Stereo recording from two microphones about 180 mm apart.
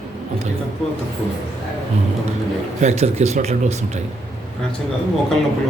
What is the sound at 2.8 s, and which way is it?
Speech, 35° right (ahead or behind).